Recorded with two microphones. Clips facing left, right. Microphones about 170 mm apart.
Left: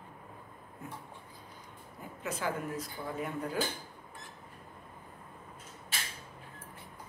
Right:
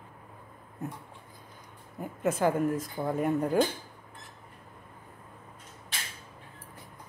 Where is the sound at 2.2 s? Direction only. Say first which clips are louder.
Right 10 dB; 50° right (ahead or behind).